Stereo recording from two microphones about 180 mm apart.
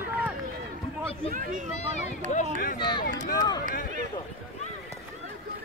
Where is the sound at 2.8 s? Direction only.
25° left (ahead or behind).